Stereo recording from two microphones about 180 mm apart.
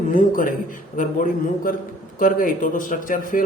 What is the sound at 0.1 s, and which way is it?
Speech, 50° left (ahead or behind).